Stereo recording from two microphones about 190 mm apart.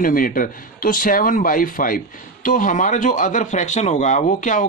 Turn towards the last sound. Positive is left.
turn(degrees=40)  # may be behind; listen again after turning